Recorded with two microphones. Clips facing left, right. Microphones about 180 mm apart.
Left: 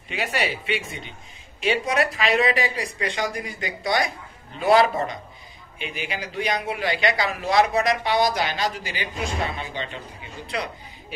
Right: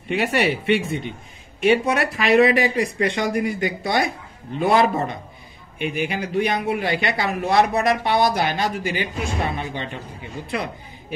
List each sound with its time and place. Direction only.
0.1 s a man's voice: 60° right (ahead or behind)